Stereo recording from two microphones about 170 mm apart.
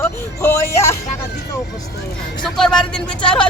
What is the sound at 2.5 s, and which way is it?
Speech, 5° left (ahead or behind).